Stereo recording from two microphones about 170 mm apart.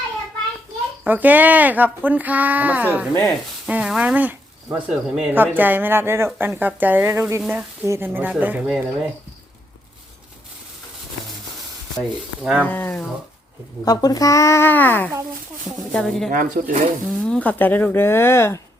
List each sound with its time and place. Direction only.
1.0 s speech: 10° right (ahead or behind)
11.9 s rub: 5° right (ahead or behind)
12.6 s speech: 10° left (ahead or behind)
13.8 s speech: 20° left (ahead or behind)
15.9 s rub: 5° left (ahead or behind)
16.3 s speech: 50° right (ahead or behind)
17.1 s speech: 5° left (ahead or behind)